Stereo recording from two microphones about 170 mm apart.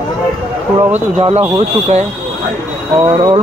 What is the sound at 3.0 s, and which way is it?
Speech, 25° right (ahead or behind).